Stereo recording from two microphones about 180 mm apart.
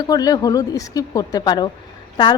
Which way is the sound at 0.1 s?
20° left (ahead or behind).